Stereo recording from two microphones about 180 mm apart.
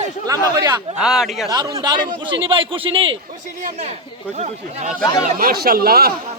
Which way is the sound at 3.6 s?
40° right (ahead or behind).